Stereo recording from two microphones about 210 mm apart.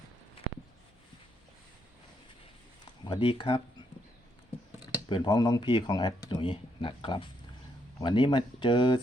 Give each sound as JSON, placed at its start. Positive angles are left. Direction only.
{"t": 3.0, "sound": "speech", "side_deg": 20}
{"t": 5.0, "sound": "speech", "side_deg": 20}